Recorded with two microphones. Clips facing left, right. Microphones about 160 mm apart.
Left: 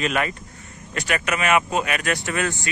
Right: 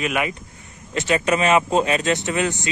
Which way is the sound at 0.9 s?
25° right (ahead or behind).